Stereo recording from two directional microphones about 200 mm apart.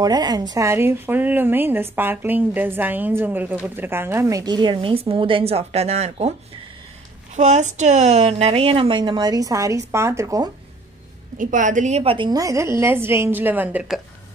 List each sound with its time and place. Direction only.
0.0 s a woman's voice: 20° right (ahead or behind)
7.3 s a woman's voice: 35° right (ahead or behind); by 10.5 s 15° right (ahead or behind)
11.3 s a woman's voice: 40° right (ahead or behind); by 14.0 s 5° right (ahead or behind)